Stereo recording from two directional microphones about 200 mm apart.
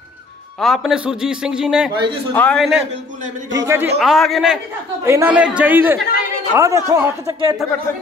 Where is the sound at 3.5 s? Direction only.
15° right (ahead or behind).